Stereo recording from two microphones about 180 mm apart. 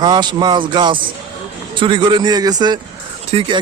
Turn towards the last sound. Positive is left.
turn(degrees=-30)  # may be behind; listen again after turning